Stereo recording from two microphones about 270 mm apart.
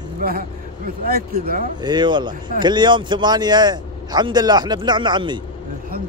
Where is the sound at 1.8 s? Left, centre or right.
Centre.